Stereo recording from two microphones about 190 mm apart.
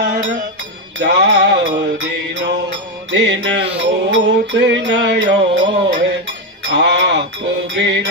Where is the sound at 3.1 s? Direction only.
75° right (ahead or behind).